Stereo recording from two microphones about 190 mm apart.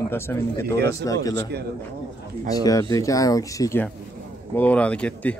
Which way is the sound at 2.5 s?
20° left (ahead or behind).